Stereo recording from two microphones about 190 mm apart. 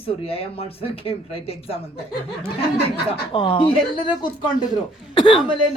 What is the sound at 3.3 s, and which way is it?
Speech, 25° left (ahead or behind).